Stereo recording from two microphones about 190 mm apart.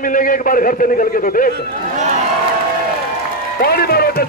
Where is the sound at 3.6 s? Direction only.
55° left (ahead or behind).